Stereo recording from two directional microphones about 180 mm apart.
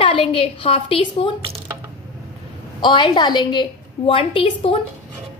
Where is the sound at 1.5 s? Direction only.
30° right (ahead or behind).